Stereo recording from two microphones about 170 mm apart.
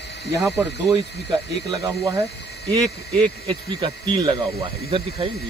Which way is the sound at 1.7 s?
25° right (ahead or behind).